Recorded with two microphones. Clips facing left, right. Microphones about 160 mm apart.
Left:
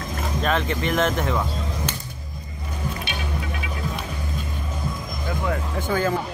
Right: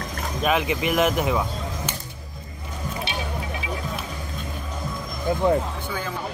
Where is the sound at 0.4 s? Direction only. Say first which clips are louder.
Right 2 dB; 10° right (ahead or behind).